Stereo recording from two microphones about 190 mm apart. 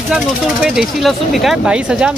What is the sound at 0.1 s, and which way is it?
Speech, 5° right (ahead or behind).